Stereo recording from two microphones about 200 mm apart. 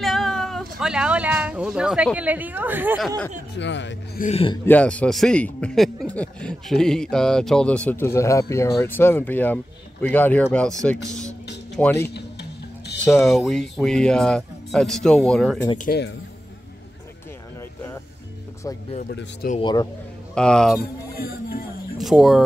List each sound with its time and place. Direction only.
0.0 s a sound: centre (ahead or behind)
0.7 s speech: 5° right (ahead or behind)
3.5 s speech: 65° left (ahead or behind)
4.2 s speech: 30° left (ahead or behind)
4.6 s a man's voice: 5° left (ahead or behind)
12.1 s music: 55° left (ahead or behind)
13.0 s speech: centre (ahead or behind)
15.8 s speech: 55° left (ahead or behind)
17.6 s a sound: 10° left (ahead or behind)
19.0 s speech: 45° left (ahead or behind)
19.6 s speech: 20° left (ahead or behind)
20.3 s speech: 5° left (ahead or behind)
21.2 s speech: 45° left (ahead or behind)
21.9 s speech: centre (ahead or behind)